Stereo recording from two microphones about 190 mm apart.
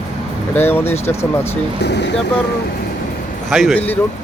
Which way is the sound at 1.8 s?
65° left (ahead or behind).